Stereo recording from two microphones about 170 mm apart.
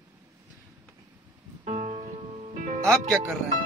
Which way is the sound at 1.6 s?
40° right (ahead or behind).